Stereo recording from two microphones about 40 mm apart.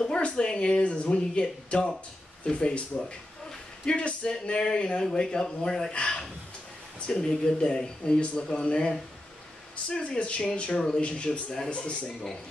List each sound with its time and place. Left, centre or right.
0.0 s speech: left
3.8 s speech: left
5.9 s speech: left
10.7 s speech: centre
11.0 s speech: left